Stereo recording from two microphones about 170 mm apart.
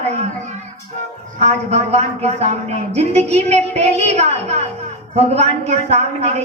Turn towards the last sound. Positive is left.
turn(degrees=-40)  # may be behind; listen again after turning